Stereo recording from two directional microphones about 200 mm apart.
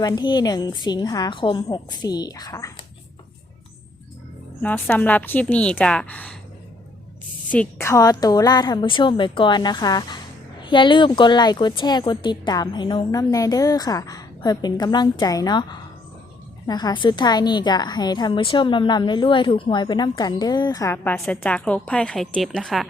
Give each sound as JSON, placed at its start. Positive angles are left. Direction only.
{"t": 0.0, "sound": "a woman's voice", "side_deg": 20}
{"t": 4.6, "sound": "a woman's voice", "side_deg": 10}
{"t": 7.5, "sound": "a woman's voice", "side_deg": 10}